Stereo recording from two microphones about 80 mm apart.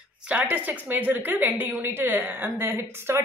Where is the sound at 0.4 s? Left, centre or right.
Right.